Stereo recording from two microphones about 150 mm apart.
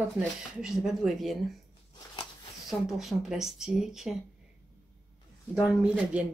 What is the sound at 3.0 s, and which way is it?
Speech, centre (ahead or behind).